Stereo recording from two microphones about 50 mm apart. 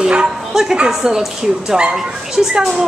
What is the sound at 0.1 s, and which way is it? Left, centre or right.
A woman's voice, centre.